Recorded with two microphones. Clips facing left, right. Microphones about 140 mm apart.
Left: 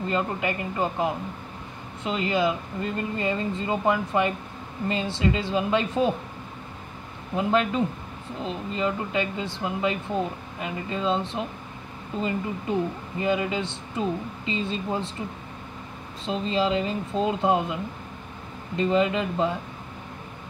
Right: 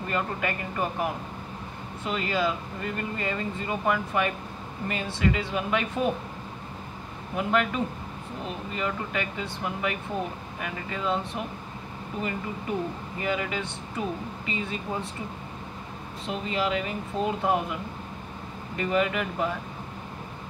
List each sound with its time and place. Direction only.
0.0 s speech: 20° left (ahead or behind)
7.3 s speech: 25° left (ahead or behind)
16.3 s speech: 25° left (ahead or behind)
18.8 s speech: 25° left (ahead or behind)